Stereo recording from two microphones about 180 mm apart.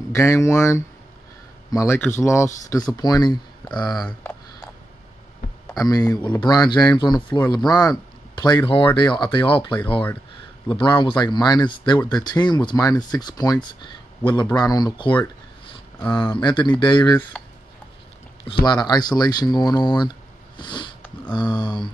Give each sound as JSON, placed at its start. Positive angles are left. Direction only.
{"t": 0.1, "sound": "speech", "side_deg": 15}
{"t": 5.8, "sound": "speech", "side_deg": 20}
{"t": 16.2, "sound": "speech", "side_deg": 25}
{"t": 17.3, "sound": "a sound", "side_deg": 5}
{"t": 18.4, "sound": "speech", "side_deg": 25}
{"t": 20.5, "sound": "a sound", "side_deg": 25}
{"t": 21.5, "sound": "speech", "side_deg": 15}